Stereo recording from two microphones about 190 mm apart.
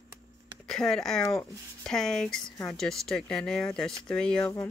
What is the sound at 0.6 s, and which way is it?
Speech, 5° left (ahead or behind).